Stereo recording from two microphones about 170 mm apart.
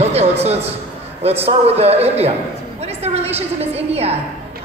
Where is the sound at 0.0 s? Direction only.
40° right (ahead or behind).